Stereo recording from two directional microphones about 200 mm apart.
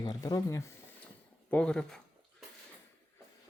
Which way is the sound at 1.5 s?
5° left (ahead or behind).